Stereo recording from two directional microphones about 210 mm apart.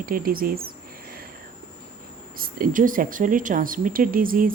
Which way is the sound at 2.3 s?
45° right (ahead or behind).